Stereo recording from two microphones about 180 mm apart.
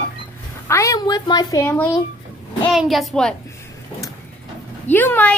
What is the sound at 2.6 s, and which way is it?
Speech, centre (ahead or behind).